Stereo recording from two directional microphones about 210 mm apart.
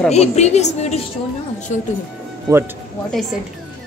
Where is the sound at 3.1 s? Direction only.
Centre (ahead or behind).